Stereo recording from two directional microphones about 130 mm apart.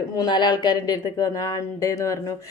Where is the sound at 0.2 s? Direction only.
35° left (ahead or behind).